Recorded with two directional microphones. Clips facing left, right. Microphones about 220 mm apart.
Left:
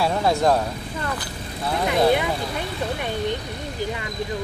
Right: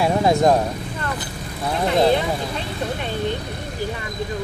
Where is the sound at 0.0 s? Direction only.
15° right (ahead or behind).